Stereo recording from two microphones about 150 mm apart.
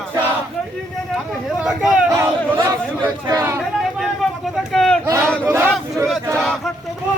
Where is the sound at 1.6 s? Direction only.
5° right (ahead or behind).